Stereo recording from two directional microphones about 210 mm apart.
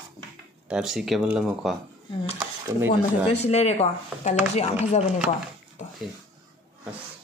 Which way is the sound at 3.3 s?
30° left (ahead or behind).